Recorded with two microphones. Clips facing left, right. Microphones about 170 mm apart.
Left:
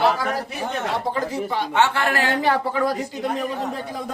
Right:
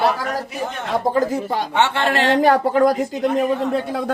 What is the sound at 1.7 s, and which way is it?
Speech, 20° right (ahead or behind).